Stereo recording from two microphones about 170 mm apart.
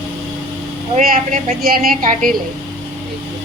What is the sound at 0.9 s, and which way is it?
A woman's voice, 55° right (ahead or behind).